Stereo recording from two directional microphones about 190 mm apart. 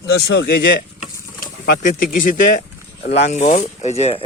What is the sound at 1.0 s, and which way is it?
Insect, 40° left (ahead or behind).